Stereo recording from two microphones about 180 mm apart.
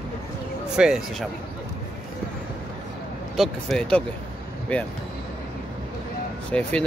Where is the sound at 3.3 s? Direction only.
Centre (ahead or behind).